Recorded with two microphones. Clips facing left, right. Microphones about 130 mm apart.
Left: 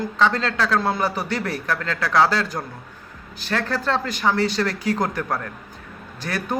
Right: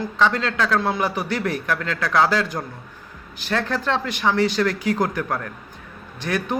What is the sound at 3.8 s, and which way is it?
A man's voice, 40° left (ahead or behind).